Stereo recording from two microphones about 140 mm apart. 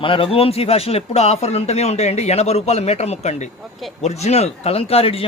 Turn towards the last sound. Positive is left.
turn(degrees=45)  # may be behind; listen again after turning